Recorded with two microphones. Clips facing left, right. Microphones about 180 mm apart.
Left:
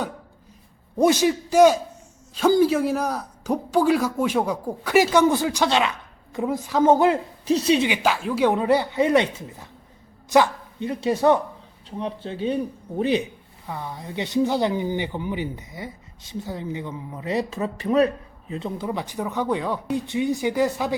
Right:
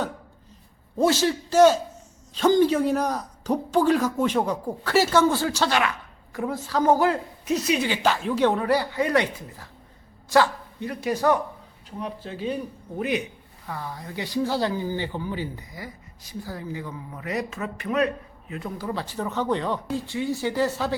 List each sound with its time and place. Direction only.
0.9 s speech: 15° left (ahead or behind)
7.9 s speech: 10° left (ahead or behind)
8.5 s speech: 20° left (ahead or behind)